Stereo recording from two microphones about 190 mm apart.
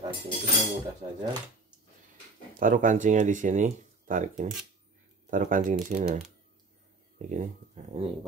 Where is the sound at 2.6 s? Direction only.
45° right (ahead or behind).